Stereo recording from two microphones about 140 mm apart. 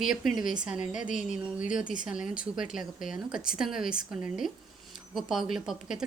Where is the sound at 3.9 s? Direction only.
90° left.